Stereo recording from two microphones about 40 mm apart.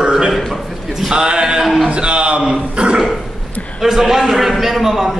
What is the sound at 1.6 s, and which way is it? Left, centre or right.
Speech, centre.